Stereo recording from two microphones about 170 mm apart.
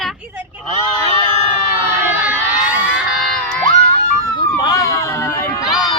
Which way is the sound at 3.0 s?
Centre (ahead or behind).